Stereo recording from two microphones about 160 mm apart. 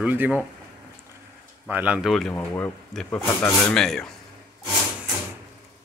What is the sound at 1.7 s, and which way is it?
Speech, 10° right (ahead or behind).